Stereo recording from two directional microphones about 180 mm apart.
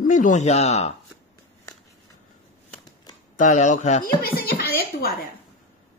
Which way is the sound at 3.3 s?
45° left (ahead or behind).